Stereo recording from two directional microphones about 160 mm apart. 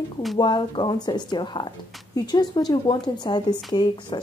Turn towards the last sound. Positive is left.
turn(degrees=30)  # may be behind; listen again after turning